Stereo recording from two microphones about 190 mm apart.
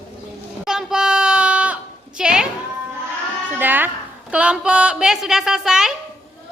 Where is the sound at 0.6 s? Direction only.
Centre (ahead or behind).